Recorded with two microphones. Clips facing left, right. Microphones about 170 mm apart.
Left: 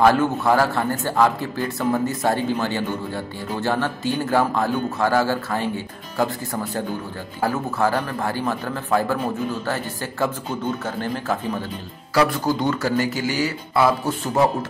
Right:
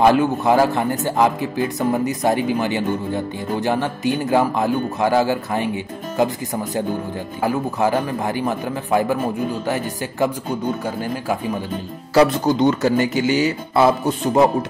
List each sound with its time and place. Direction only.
0.0 s a man's voice: 15° right (ahead or behind)
12.1 s speech: 20° right (ahead or behind)